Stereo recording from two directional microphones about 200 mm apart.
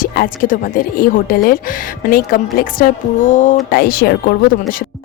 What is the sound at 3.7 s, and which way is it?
Speech, 50° left (ahead or behind).